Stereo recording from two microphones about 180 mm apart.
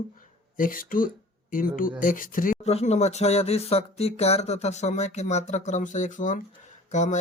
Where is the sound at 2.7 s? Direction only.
40° left (ahead or behind).